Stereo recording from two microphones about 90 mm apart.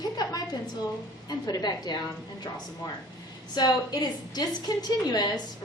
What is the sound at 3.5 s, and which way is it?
A woman's voice, 50° left (ahead or behind).